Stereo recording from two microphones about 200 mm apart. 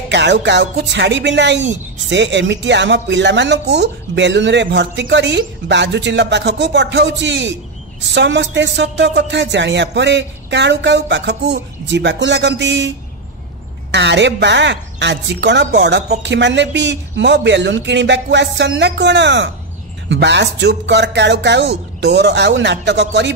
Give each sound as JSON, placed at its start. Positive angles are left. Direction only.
{"t": 0.1, "sound": "speech", "side_deg": -60}
{"t": 13.9, "sound": "speech", "side_deg": -60}